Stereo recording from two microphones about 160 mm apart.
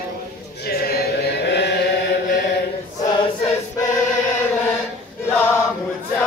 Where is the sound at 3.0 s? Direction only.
25° left (ahead or behind).